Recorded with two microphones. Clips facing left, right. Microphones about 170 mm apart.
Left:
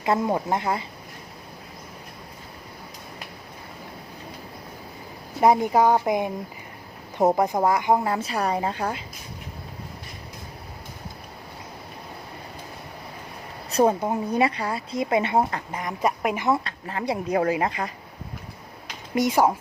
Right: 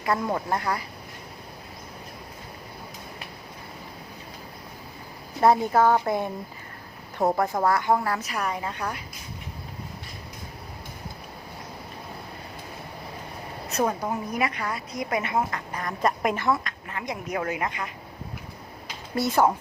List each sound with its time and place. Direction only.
0.0 s a woman's voice: 20° left (ahead or behind)
5.4 s a woman's voice: 15° left (ahead or behind)
13.7 s a woman's voice: 30° left (ahead or behind)
15.8 s speech: 15° left (ahead or behind)
16.6 s a woman's voice: 30° left (ahead or behind)
19.1 s speech: 15° left (ahead or behind)